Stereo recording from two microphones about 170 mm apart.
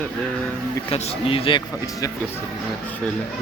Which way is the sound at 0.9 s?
35° left (ahead or behind).